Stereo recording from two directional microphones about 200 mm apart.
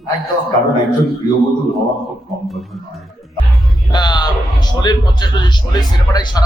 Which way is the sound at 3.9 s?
20° left (ahead or behind).